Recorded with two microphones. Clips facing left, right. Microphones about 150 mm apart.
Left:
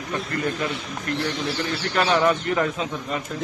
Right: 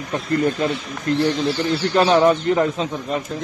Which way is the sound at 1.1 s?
25° right (ahead or behind).